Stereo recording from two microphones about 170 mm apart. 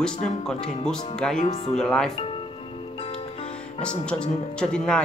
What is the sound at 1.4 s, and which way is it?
Speech, 40° left (ahead or behind).